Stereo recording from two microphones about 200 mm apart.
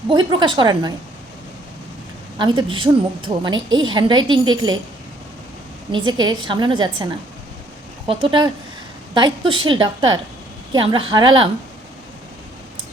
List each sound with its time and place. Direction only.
0.1 s a woman's voice: 20° right (ahead or behind)
2.4 s a woman's voice: 25° right (ahead or behind)
6.1 s a woman's voice: 20° right (ahead or behind)